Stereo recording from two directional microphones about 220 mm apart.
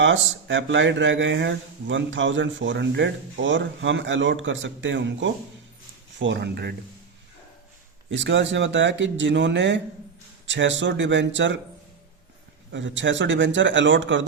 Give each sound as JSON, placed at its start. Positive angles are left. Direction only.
{"t": 0.0, "sound": "speech", "side_deg": -60}
{"t": 8.1, "sound": "speech", "side_deg": -55}
{"t": 12.7, "sound": "speech", "side_deg": -55}